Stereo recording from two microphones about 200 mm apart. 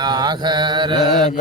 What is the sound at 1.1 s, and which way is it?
Mantra, 35° left (ahead or behind).